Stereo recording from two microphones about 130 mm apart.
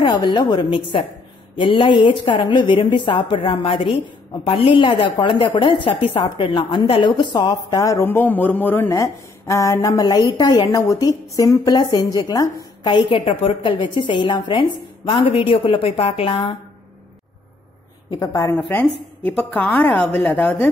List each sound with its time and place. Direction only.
0.0 s a woman's voice: 35° left (ahead or behind)
13.2 s a woman's voice: 50° left (ahead or behind)
18.3 s a woman's voice: 25° left (ahead or behind)
19.2 s a woman's voice: 10° left (ahead or behind)